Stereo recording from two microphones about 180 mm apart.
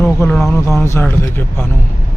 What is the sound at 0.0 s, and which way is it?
Speech, 5° left (ahead or behind).